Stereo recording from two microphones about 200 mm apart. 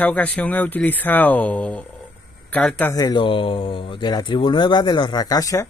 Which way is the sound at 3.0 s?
20° left (ahead or behind).